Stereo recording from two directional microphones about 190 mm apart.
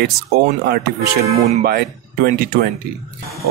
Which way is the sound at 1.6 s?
55° right (ahead or behind).